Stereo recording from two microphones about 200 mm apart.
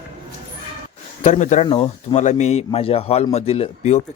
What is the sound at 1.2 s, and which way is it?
Speech, 35° left (ahead or behind).